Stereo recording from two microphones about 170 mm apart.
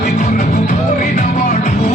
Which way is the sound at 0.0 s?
50° left (ahead or behind).